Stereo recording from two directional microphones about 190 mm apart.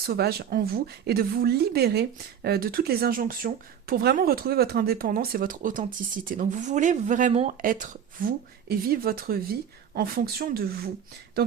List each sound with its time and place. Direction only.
0.0 s speech: 55° right (ahead or behind)